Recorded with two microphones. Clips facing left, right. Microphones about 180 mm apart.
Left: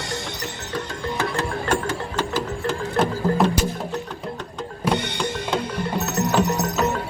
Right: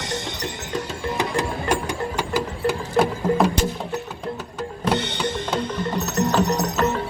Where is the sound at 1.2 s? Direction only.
15° right (ahead or behind).